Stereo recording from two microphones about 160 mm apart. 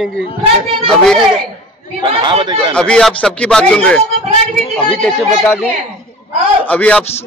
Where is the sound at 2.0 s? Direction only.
30° right (ahead or behind).